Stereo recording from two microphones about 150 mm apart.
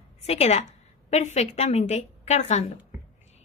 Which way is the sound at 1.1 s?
50° left (ahead or behind).